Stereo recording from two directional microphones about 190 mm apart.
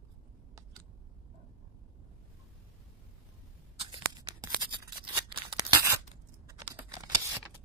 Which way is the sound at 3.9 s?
25° right (ahead or behind).